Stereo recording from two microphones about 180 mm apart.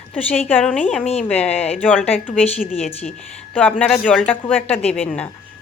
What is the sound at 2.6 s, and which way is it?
Speech, 5° right (ahead or behind).